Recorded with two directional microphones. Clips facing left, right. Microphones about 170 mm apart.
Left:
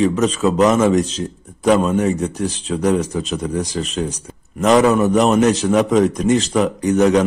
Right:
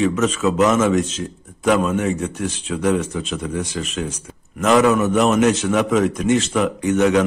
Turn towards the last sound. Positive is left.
turn(degrees=35)  # may be behind; listen again after turning